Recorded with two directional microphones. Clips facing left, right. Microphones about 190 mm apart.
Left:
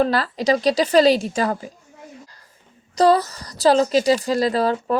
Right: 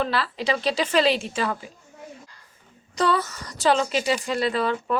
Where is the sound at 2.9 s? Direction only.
35° left (ahead or behind).